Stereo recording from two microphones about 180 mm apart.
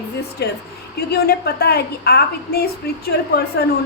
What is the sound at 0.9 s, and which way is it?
A woman's voice, 60° left (ahead or behind).